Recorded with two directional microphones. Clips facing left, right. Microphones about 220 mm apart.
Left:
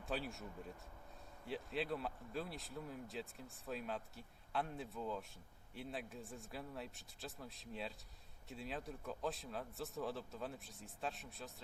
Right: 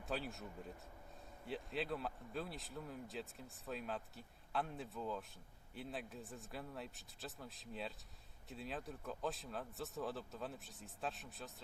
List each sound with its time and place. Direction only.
0.0 s speech: centre (ahead or behind)
1.5 s speech: centre (ahead or behind)